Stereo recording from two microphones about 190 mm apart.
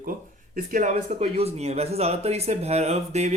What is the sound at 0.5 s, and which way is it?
Speech, 45° right (ahead or behind).